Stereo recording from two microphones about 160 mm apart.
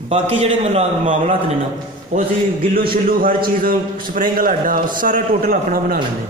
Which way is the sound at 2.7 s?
65° right (ahead or behind).